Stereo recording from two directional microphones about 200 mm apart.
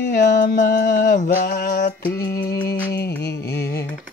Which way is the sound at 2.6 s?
55° left (ahead or behind).